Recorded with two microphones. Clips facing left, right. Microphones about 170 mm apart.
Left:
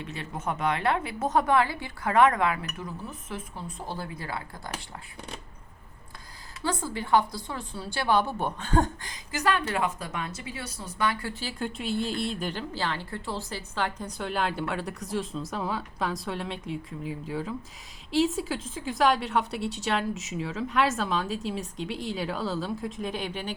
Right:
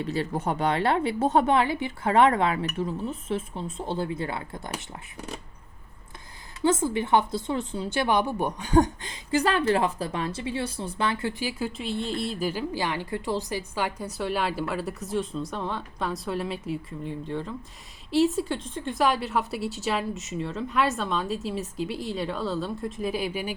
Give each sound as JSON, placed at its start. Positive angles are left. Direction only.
{"t": 0.0, "sound": "a woman's voice", "side_deg": -35}
{"t": 6.6, "sound": "a woman's voice", "side_deg": -20}
{"t": 11.6, "sound": "a woman's voice", "side_deg": 0}